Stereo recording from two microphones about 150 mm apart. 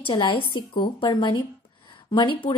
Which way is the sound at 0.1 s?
30° left (ahead or behind).